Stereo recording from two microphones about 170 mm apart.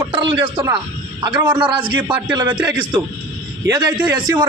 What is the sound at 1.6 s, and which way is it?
Speech, 20° right (ahead or behind).